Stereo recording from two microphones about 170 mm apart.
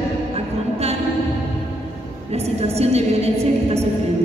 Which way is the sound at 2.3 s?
40° right (ahead or behind).